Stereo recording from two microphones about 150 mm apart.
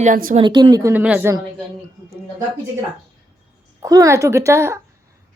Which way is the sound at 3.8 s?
20° right (ahead or behind).